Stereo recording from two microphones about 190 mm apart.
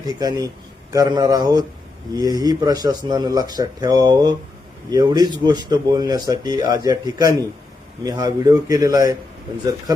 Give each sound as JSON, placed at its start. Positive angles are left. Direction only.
{"t": 0.0, "sound": "speech", "side_deg": -20}